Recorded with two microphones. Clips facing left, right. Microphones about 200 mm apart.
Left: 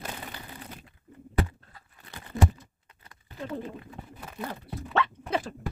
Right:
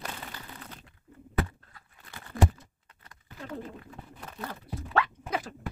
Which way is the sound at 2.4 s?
25° left (ahead or behind).